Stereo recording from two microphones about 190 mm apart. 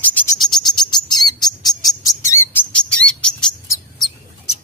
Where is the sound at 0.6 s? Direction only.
20° left (ahead or behind).